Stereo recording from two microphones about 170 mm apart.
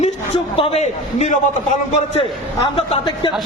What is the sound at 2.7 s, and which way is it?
Speech, 30° left (ahead or behind).